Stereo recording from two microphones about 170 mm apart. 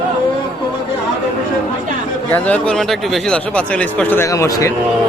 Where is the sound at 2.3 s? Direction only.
5° left (ahead or behind).